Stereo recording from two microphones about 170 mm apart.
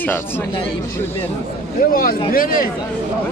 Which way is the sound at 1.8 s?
60° left (ahead or behind).